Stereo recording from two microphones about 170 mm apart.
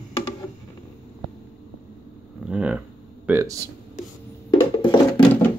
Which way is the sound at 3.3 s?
20° right (ahead or behind).